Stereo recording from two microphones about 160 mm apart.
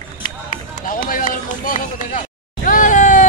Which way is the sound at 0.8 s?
55° left (ahead or behind).